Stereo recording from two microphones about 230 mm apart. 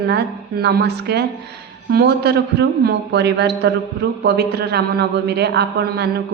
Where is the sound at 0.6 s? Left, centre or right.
Right.